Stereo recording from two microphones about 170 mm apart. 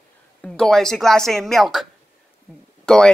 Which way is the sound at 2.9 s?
5° left (ahead or behind).